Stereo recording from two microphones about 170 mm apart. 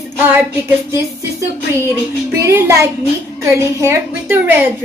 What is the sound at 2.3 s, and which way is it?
A woman's voice, 15° right (ahead or behind).